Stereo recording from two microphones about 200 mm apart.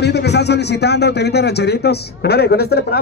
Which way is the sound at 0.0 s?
55° left (ahead or behind).